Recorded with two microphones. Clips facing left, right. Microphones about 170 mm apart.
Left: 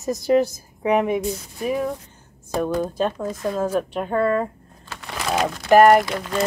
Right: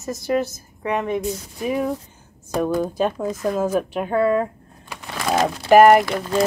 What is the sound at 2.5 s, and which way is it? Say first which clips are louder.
Speech: right 1 dB; 5° right (ahead or behind).